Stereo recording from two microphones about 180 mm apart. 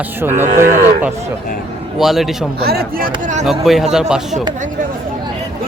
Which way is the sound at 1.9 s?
Centre (ahead or behind).